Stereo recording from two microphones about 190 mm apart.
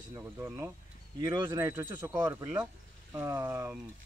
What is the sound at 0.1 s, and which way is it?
Speech, 15° right (ahead or behind).